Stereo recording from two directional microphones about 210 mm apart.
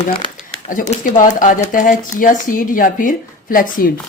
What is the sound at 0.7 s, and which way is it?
Speech, 40° left (ahead or behind).